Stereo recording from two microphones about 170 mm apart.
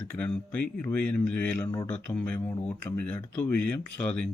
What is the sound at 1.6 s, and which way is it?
Speech, 20° left (ahead or behind).